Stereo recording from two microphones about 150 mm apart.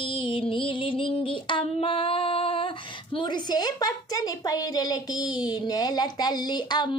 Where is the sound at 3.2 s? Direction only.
30° left (ahead or behind).